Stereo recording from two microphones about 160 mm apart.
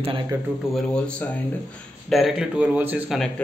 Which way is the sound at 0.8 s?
5° left (ahead or behind).